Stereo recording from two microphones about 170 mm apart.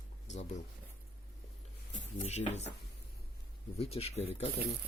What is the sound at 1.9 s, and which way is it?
Speech, 40° left (ahead or behind).